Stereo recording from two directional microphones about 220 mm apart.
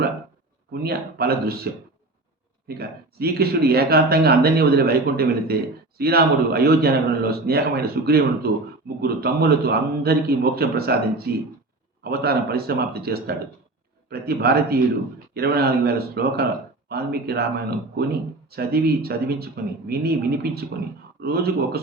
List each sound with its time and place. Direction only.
0.7 s speech: 45° right (ahead or behind)
2.6 s speech: 45° right (ahead or behind)